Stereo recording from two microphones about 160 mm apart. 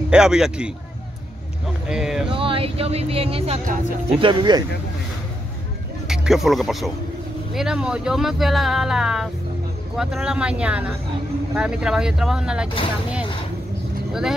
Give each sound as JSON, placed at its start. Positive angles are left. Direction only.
{"t": 0.1, "sound": "speech", "side_deg": -5}
{"t": 1.9, "sound": "a sound", "side_deg": -5}
{"t": 2.2, "sound": "speech", "side_deg": -35}
{"t": 6.0, "sound": "speech", "side_deg": -5}